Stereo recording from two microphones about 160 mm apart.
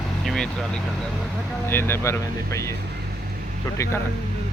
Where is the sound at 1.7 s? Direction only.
15° left (ahead or behind).